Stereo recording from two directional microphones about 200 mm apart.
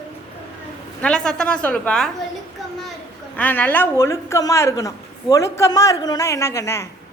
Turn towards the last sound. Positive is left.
turn(degrees=15)  # may be behind; listen again after turning